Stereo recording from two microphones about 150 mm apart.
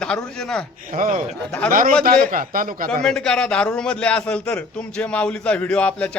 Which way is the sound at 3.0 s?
5° left (ahead or behind).